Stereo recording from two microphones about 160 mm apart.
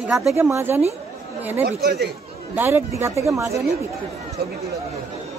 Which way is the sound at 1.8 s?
90° right.